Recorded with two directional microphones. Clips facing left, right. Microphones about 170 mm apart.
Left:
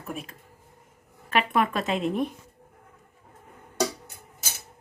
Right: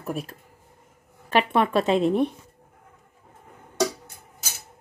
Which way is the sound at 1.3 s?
30° right (ahead or behind).